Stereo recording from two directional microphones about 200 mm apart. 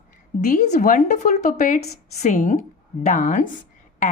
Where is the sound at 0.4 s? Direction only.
35° left (ahead or behind).